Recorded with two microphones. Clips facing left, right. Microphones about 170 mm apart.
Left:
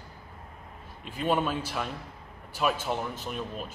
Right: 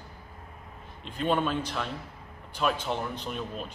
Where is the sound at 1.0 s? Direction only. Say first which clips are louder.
Even; 5° left (ahead or behind).